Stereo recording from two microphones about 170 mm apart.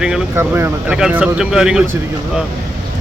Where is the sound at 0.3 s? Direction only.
15° right (ahead or behind).